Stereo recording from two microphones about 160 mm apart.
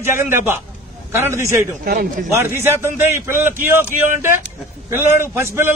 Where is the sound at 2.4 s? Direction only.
15° right (ahead or behind).